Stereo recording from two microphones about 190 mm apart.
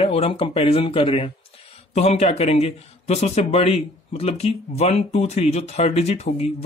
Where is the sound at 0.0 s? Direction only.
30° left (ahead or behind).